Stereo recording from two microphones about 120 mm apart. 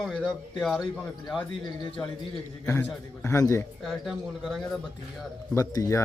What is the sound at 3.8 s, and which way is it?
Speech, centre (ahead or behind).